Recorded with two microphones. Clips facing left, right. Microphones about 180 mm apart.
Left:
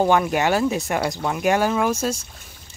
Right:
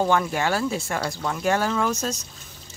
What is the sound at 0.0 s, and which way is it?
Speech, 15° left (ahead or behind).